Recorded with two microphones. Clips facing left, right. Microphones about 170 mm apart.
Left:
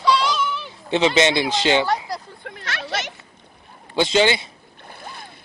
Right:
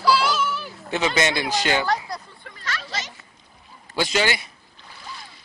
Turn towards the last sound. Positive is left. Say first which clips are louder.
# left 3 dB
turn(degrees=55)  # may be behind; listen again after turning